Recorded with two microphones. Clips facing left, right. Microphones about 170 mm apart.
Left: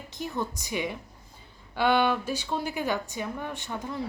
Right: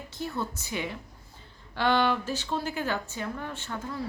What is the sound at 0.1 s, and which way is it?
A woman's voice, 15° left (ahead or behind).